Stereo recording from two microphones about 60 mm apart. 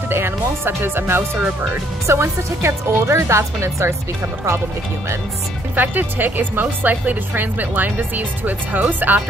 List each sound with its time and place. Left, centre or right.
0.1 s speech: right
5.8 s speech: right